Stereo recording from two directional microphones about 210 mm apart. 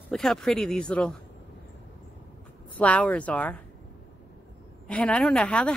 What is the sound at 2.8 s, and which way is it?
Speech, 5° left (ahead or behind).